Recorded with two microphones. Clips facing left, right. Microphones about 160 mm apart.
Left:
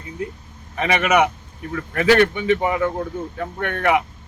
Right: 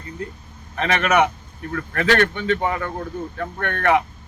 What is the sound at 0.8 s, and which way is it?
Speech, 10° left (ahead or behind).